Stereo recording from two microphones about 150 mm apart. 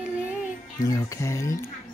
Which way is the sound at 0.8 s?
20° left (ahead or behind).